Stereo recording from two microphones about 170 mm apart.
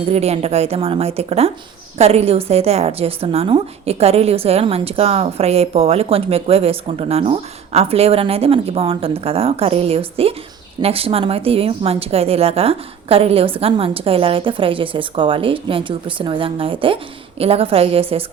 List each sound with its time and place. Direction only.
0.1 s a woman's voice: 40° right (ahead or behind)